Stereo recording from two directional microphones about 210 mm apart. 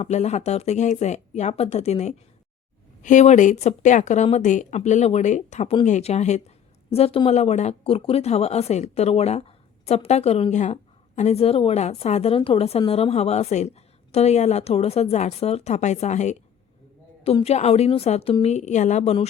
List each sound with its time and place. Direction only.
0.0 s a woman's voice: 30° left (ahead or behind)